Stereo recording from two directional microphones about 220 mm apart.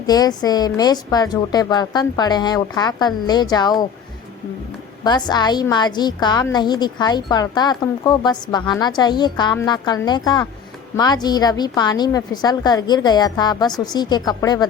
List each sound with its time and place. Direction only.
0.0 s a woman's voice: 20° left (ahead or behind)
5.0 s a woman's voice: 20° left (ahead or behind)